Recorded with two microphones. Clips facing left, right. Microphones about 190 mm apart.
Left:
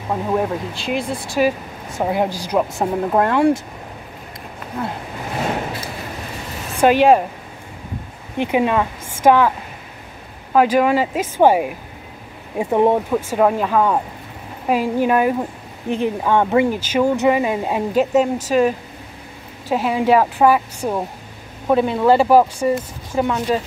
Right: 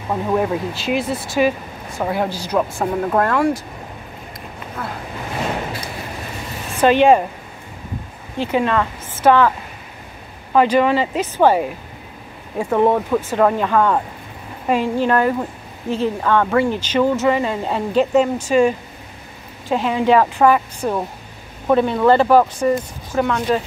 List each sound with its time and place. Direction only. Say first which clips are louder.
0.1 s speech: right 1 dB; 5° left (ahead or behind)
2.0 s speech: left 2 dB; 15° left (ahead or behind)
4.8 s speech: left 3 dB; 25° left (ahead or behind)
6.8 s speech: even; 5° left (ahead or behind)
8.4 s speech: left 1 dB; 15° left (ahead or behind)
10.5 s speech: even; 5° left (ahead or behind)